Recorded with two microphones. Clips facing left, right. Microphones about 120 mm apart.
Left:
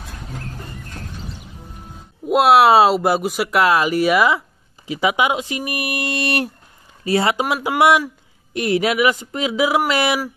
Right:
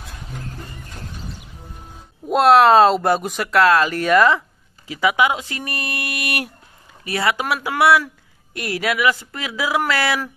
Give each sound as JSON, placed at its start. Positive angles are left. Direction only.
{"t": 2.2, "sound": "speech", "side_deg": 5}
{"t": 4.8, "sound": "speech", "side_deg": 20}
{"t": 6.0, "sound": "a sound", "side_deg": 30}
{"t": 7.1, "sound": "speech", "side_deg": 25}